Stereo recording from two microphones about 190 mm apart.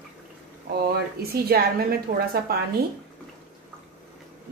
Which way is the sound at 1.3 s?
55° right (ahead or behind).